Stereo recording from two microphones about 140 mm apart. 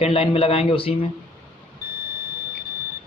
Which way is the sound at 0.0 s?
45° left (ahead or behind).